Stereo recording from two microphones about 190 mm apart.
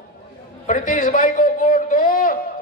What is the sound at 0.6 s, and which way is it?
A man's voice, 45° left (ahead or behind).